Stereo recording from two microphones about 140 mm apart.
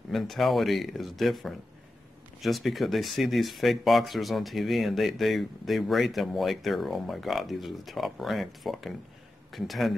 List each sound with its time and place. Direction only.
0.1 s speech: centre (ahead or behind)